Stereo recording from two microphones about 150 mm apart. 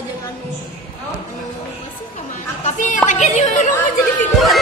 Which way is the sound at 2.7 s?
55° left (ahead or behind).